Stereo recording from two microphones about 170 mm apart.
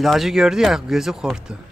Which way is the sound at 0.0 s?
Centre (ahead or behind).